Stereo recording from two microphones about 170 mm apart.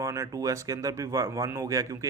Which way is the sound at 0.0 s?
20° right (ahead or behind).